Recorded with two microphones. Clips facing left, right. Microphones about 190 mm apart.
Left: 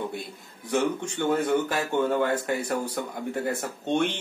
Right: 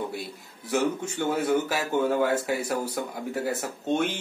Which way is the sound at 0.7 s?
5° right (ahead or behind).